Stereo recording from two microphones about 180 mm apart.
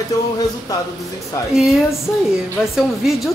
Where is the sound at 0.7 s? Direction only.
20° left (ahead or behind).